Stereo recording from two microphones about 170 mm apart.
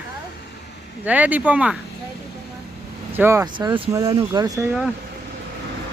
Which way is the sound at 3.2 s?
15° right (ahead or behind).